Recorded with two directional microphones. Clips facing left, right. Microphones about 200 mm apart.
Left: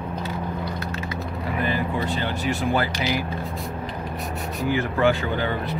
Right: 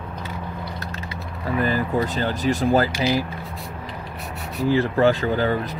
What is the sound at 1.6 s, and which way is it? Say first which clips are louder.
Speech: right 3 dB; 40° right (ahead or behind).